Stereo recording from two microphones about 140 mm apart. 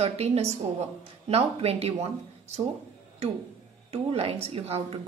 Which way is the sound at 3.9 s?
45° right (ahead or behind).